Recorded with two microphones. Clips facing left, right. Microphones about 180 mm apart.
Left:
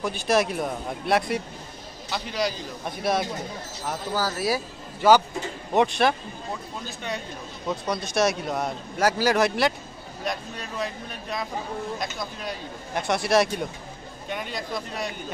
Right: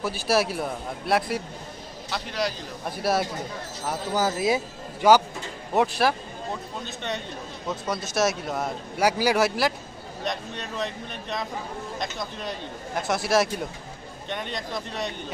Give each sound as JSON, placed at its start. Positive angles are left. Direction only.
{"t": 0.0, "sound": "speech", "side_deg": -5}
{"t": 4.1, "sound": "speech", "side_deg": -20}
{"t": 5.8, "sound": "speech", "side_deg": -5}